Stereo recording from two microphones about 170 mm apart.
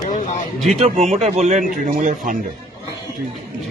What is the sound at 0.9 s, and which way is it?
A man's voice, 40° right (ahead or behind).